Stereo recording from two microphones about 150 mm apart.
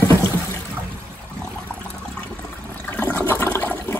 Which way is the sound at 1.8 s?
5° left (ahead or behind).